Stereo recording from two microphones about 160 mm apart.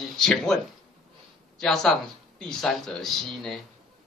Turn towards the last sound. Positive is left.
turn(degrees=0)  # may be behind; listen again after turning